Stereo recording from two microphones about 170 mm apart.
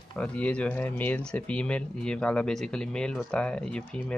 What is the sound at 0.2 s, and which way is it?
Speech, 5° left (ahead or behind).